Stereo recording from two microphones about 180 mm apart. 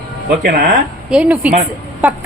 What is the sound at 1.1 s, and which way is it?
A woman's voice, 10° right (ahead or behind).